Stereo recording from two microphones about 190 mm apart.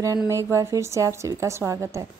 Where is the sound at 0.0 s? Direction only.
15° right (ahead or behind).